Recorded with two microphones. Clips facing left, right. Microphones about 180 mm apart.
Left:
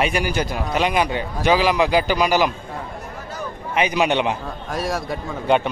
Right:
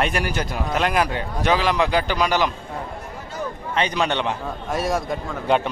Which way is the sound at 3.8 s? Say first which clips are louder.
Left 3 dB; 10° left (ahead or behind).